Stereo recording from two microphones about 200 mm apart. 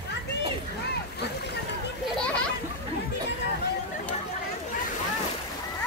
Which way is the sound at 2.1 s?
5° left (ahead or behind).